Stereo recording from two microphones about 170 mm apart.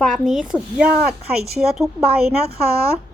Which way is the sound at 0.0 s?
Centre (ahead or behind).